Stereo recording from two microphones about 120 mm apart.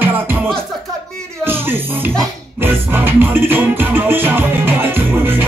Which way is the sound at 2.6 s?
15° right (ahead or behind).